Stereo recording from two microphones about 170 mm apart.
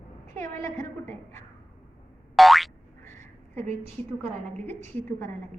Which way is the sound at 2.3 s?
Centre (ahead or behind).